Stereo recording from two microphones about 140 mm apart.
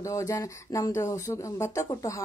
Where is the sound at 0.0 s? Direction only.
25° left (ahead or behind).